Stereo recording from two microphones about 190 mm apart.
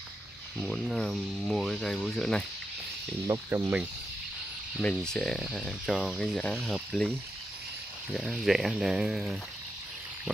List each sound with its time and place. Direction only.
0.7 s speech: centre (ahead or behind)
3.3 s speech: 15° right (ahead or behind)
4.7 s speech: centre (ahead or behind)
8.1 s speech: centre (ahead or behind)